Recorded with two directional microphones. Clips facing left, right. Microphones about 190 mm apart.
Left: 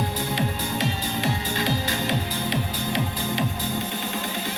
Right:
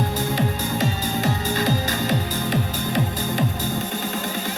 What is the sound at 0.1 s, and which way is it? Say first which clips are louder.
Music: right 3 dB; 45° right (ahead or behind).